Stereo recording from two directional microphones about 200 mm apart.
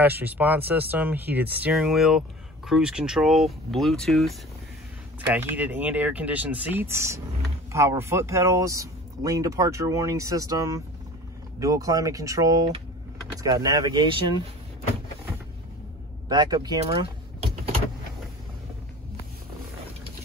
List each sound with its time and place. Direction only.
0.0 s speech: 10° right (ahead or behind)
5.3 s speech: 10° right (ahead or behind)
16.3 s speech: 20° right (ahead or behind)